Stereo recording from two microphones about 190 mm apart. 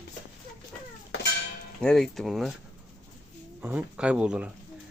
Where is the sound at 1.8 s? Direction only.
Centre (ahead or behind).